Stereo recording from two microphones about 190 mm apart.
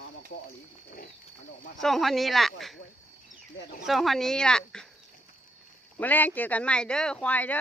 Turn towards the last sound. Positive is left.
turn(degrees=10)  # may be behind; listen again after turning